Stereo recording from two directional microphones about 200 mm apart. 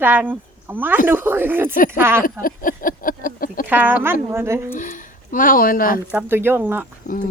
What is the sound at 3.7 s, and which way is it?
Speech, 10° right (ahead or behind).